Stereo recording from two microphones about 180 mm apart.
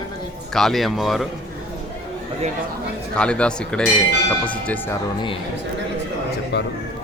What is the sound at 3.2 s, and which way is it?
Speech, 5° left (ahead or behind).